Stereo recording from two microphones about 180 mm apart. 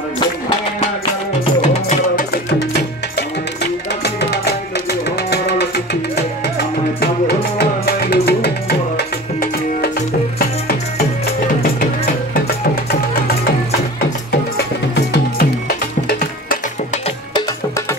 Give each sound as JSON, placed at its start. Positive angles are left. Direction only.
{"t": 1.7, "sound": "music", "side_deg": 40}
{"t": 2.3, "sound": "music", "side_deg": 65}
{"t": 7.0, "sound": "music", "side_deg": 60}